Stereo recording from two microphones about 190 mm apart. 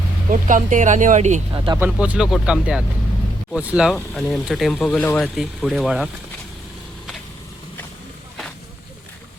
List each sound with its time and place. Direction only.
0.3 s speech: 45° right (ahead or behind)
1.5 s speech: 25° right (ahead or behind)
1.8 s speech: 5° right (ahead or behind)